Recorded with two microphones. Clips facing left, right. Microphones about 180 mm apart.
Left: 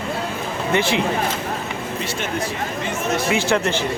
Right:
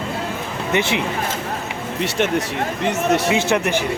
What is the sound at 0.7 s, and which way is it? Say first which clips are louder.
Speech: even; 20° right (ahead or behind).